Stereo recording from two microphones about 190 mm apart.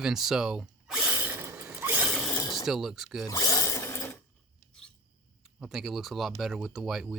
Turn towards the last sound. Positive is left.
turn(degrees=0)  # may be behind; listen again after turning